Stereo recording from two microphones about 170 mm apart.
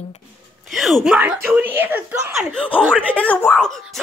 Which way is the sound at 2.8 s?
10° right (ahead or behind).